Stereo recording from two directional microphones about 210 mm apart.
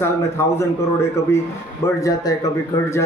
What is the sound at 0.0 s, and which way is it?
Speech, 10° left (ahead or behind).